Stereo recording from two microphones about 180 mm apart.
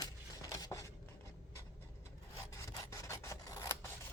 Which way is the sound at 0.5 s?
15° left (ahead or behind).